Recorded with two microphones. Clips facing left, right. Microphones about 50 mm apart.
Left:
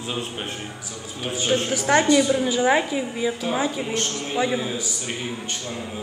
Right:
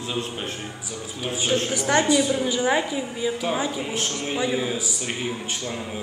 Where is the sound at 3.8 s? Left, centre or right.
Centre.